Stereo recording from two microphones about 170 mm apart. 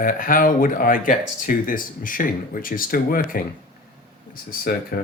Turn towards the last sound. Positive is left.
turn(degrees=60)  # may be behind; listen again after turning